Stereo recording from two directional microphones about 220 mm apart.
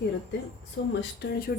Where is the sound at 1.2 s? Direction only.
45° left (ahead or behind).